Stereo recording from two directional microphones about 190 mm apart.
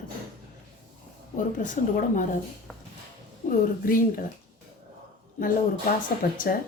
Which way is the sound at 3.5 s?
45° left (ahead or behind).